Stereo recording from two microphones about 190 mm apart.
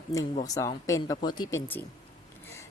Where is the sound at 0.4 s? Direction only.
20° left (ahead or behind).